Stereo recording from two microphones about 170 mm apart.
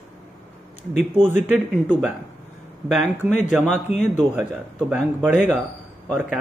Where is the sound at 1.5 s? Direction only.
Centre (ahead or behind).